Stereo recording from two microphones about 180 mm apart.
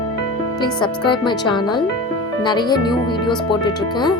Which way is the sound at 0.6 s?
25° left (ahead or behind).